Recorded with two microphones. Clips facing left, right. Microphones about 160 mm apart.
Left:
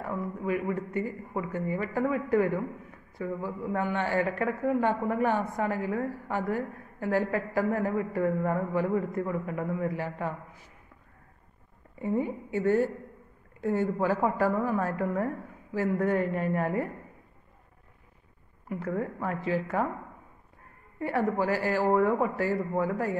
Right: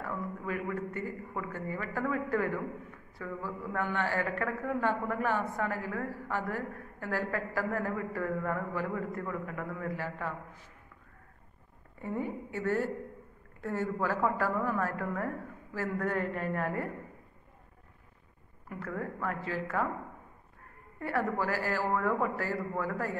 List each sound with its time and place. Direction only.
0.0 s a man's voice: 20° left (ahead or behind)
12.0 s a man's voice: 15° left (ahead or behind)
18.7 s a man's voice: 20° left (ahead or behind)
21.0 s a man's voice: 20° left (ahead or behind)